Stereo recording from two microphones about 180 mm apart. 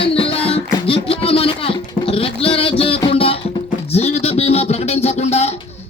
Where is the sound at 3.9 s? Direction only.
35° left (ahead or behind).